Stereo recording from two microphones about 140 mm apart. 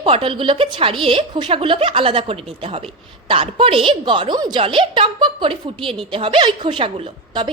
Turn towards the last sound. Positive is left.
turn(degrees=-35)  # may be behind; listen again after turning